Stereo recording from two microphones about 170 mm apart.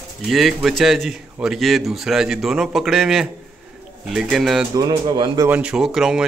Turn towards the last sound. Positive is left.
turn(degrees=-5)  # may be behind; listen again after turning